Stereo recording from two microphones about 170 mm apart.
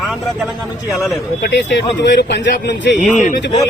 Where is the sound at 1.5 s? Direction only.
90° left.